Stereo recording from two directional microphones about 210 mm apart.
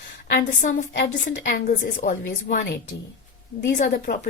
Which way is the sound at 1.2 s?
55° left (ahead or behind).